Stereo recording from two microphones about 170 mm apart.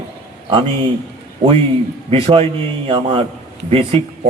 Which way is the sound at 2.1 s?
35° right (ahead or behind).